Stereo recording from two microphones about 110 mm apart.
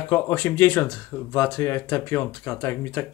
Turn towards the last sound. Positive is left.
turn(degrees=25)  # may be behind; listen again after turning